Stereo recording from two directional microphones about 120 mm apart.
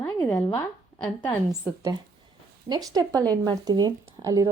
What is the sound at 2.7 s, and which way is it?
Speech, 30° right (ahead or behind).